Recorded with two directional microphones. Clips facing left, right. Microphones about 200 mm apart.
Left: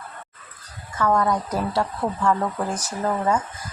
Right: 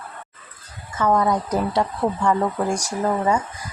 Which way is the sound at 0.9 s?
20° right (ahead or behind).